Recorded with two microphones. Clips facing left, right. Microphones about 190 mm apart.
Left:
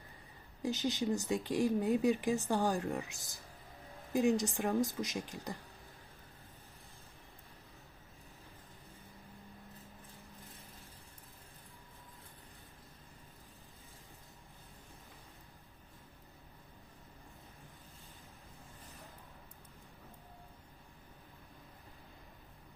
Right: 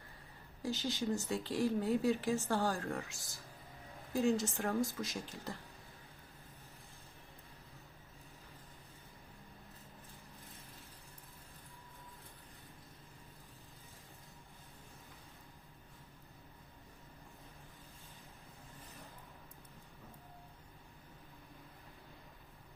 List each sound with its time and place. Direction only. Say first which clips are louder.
0.6 s speech: left 3 dB; 20° left (ahead or behind)